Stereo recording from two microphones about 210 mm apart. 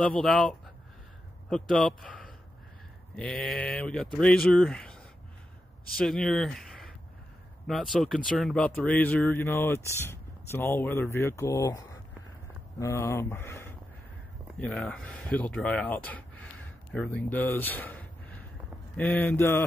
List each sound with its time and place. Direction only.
0.0 s speech: 5° left (ahead or behind)
5.9 s speech: 5° left (ahead or behind)